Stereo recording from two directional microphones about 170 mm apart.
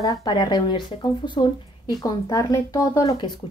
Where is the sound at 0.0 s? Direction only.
20° left (ahead or behind).